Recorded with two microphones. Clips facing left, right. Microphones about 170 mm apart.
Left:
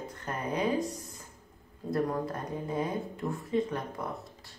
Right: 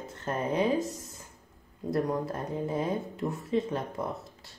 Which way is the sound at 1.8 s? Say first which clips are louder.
Right 1 dB; 25° right (ahead or behind).